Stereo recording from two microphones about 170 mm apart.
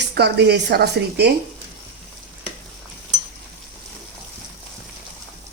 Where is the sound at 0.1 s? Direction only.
75° right (ahead or behind).